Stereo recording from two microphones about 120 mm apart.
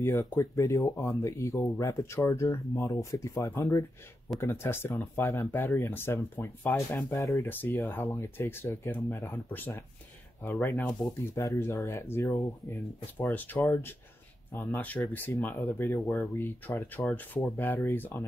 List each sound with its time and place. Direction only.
0.0 s speech: 25° left (ahead or behind)